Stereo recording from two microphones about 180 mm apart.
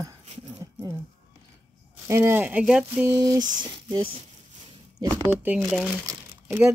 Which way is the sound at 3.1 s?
20° right (ahead or behind).